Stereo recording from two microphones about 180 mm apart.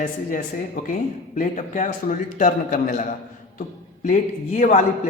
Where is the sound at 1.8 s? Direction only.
45° left (ahead or behind).